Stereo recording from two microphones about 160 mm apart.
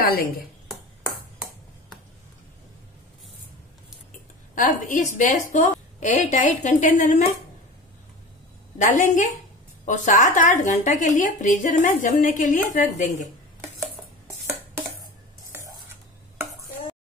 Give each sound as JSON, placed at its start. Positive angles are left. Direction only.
{"t": 0.0, "sound": "a woman's voice", "side_deg": 65}
{"t": 4.6, "sound": "speech", "side_deg": 55}
{"t": 8.7, "sound": "speech", "side_deg": 50}
{"t": 13.6, "sound": "a sound", "side_deg": -15}
{"t": 15.5, "sound": "stir", "side_deg": -15}